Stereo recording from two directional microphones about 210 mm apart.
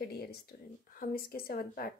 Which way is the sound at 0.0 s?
50° left (ahead or behind).